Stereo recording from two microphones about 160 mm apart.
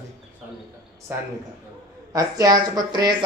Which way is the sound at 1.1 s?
15° right (ahead or behind).